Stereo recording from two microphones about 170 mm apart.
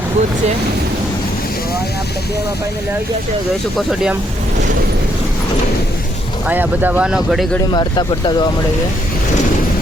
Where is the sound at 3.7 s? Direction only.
Centre (ahead or behind).